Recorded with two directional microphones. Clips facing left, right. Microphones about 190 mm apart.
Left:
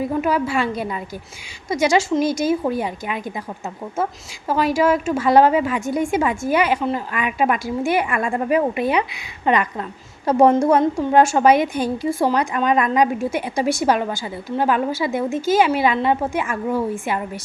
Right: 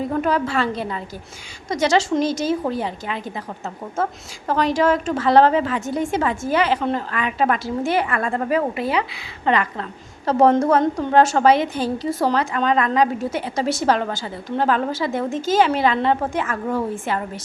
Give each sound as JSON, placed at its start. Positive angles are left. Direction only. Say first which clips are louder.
{"t": 0.0, "sound": "a woman's voice", "louder": "left 1 dB", "side_deg": 10}
{"t": 4.4, "sound": "a woman's voice", "louder": "left 1 dB", "side_deg": 10}